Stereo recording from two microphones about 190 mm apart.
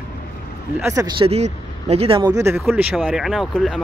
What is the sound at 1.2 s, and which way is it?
Speech, 35° right (ahead or behind).